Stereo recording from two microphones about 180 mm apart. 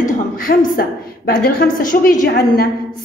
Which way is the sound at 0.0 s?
50° left (ahead or behind).